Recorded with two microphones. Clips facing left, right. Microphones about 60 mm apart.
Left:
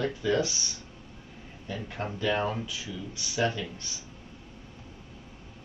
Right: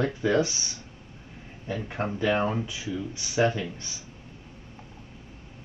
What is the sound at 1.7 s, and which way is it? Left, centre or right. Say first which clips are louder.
Speech: right 5 dB; right.